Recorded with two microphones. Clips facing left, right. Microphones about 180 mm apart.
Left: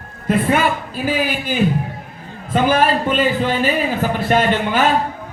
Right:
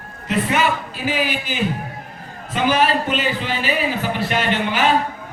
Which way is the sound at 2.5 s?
50° left (ahead or behind).